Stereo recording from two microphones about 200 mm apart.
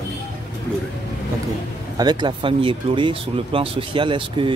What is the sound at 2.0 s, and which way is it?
Speech, 20° right (ahead or behind).